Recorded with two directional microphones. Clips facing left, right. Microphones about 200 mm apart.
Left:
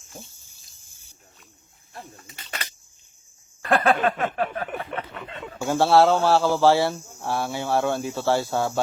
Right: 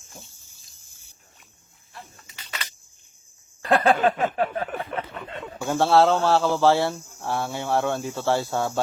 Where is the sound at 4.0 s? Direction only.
15° right (ahead or behind).